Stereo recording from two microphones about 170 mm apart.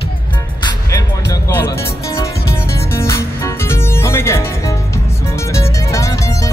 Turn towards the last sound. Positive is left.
turn(degrees=20)  # may be behind; listen again after turning